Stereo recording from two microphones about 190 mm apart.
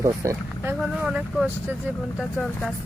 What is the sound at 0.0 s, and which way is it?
Speech, 15° right (ahead or behind).